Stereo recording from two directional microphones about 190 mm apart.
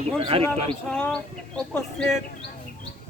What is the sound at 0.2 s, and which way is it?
Speech, 30° right (ahead or behind).